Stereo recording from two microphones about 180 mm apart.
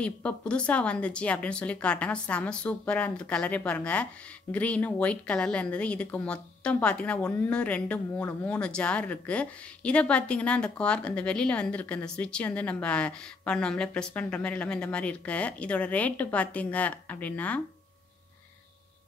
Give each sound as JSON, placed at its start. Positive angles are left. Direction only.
{"t": 0.0, "sound": "a woman's voice", "side_deg": 5}